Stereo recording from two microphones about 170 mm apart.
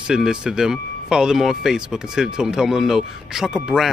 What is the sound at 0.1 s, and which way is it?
Speech, 5° right (ahead or behind).